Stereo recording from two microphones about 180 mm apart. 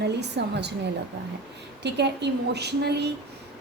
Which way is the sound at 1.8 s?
70° right (ahead or behind).